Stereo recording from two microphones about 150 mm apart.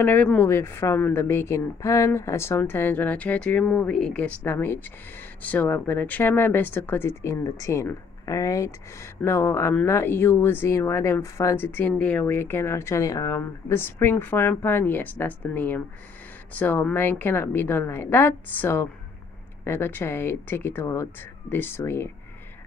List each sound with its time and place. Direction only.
0.0 s speech: 10° left (ahead or behind)